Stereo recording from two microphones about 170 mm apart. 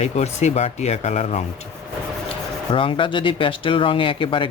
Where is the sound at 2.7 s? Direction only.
30° left (ahead or behind).